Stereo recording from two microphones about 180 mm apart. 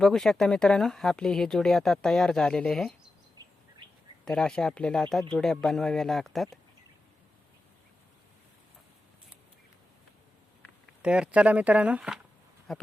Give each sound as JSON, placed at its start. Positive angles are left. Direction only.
{"t": 0.0, "sound": "speech", "side_deg": 0}
{"t": 3.4, "sound": "bird vocalization", "side_deg": -20}
{"t": 4.3, "sound": "speech", "side_deg": 5}
{"t": 11.0, "sound": "speech", "side_deg": -5}